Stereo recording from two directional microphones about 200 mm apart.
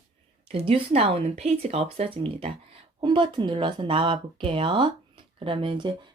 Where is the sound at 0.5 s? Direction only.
30° right (ahead or behind).